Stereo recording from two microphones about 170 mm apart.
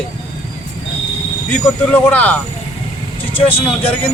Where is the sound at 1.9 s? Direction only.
10° left (ahead or behind).